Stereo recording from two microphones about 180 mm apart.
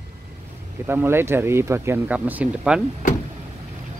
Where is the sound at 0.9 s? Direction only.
15° right (ahead or behind).